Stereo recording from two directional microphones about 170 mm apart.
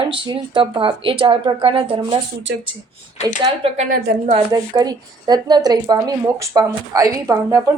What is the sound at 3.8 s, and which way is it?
Speech, 55° right (ahead or behind).